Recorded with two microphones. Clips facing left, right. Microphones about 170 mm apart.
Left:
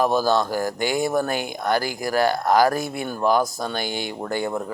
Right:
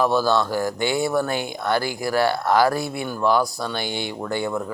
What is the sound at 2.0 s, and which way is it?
Speech, 45° left (ahead or behind).